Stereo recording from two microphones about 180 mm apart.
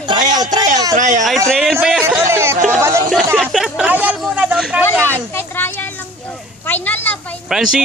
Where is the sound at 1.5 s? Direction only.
Centre (ahead or behind).